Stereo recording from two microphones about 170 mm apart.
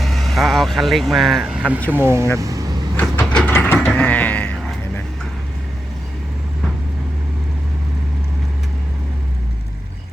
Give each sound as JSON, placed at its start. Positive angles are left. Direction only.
{"t": 0.0, "sound": "speech", "side_deg": 0}
{"t": 2.4, "sound": "vehicle", "side_deg": -20}
{"t": 3.0, "sound": "train", "side_deg": 10}
{"t": 3.8, "sound": "sheep", "side_deg": 10}